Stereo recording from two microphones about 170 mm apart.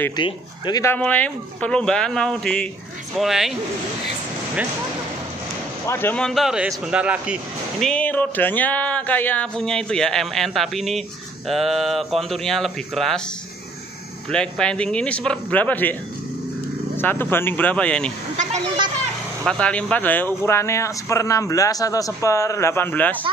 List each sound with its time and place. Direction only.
0.1 s speech: 25° left (ahead or behind)
0.9 s music: 10° left (ahead or behind)
5.9 s music: 10° left (ahead or behind)
6.9 s speech: 5° right (ahead or behind)
7.8 s music: 10° left (ahead or behind)
14.3 s speech: 5° left (ahead or behind)
19.4 s speech: 5° left (ahead or behind)